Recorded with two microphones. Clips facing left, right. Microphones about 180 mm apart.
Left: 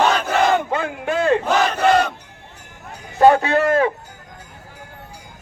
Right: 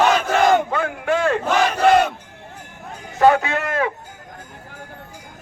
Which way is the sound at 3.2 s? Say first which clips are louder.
Left 3 dB; 35° left (ahead or behind).